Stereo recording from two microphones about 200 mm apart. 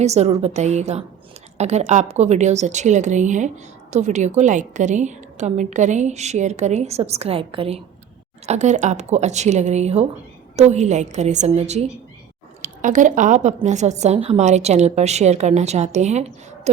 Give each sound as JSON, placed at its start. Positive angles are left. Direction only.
{"t": 0.0, "sound": "a woman's voice", "side_deg": -35}